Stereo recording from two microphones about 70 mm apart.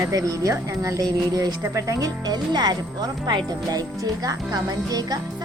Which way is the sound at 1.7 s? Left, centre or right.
Right.